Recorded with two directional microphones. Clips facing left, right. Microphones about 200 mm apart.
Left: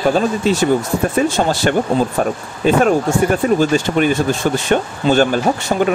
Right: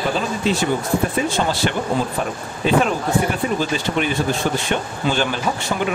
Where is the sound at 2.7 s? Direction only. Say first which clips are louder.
Left 5 dB; 45° left (ahead or behind).